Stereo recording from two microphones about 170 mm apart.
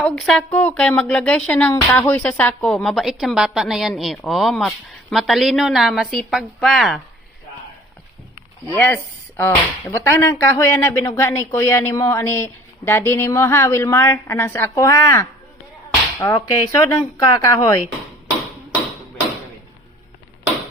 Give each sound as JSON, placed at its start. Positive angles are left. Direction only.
{"t": 0.0, "sound": "a woman's voice", "side_deg": 5}
{"t": 8.7, "sound": "speech", "side_deg": 10}